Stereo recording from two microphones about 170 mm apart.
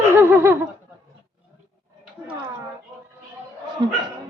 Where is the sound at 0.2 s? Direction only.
10° right (ahead or behind).